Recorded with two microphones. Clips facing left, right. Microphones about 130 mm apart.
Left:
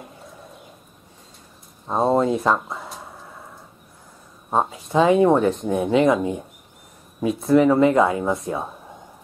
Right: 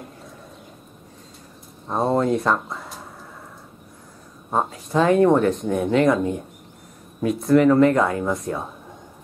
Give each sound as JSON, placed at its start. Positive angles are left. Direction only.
{"t": 1.9, "sound": "speech", "side_deg": 25}
{"t": 2.1, "sound": "a sound", "side_deg": 5}
{"t": 4.6, "sound": "speech", "side_deg": 0}